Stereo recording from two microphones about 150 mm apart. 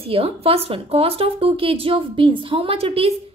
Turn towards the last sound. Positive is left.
turn(degrees=-40)  # may be behind; listen again after turning